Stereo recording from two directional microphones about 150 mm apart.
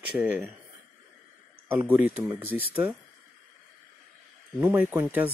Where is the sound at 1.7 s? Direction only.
10° right (ahead or behind).